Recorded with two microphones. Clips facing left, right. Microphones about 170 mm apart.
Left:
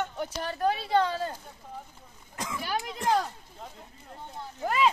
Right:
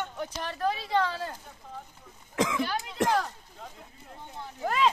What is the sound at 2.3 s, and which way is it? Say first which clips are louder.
Speech: right 9 dB; 90° right.